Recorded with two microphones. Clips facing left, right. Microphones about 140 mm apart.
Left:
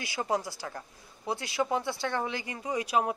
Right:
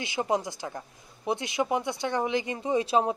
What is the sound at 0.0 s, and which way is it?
A woman's voice, 20° right (ahead or behind).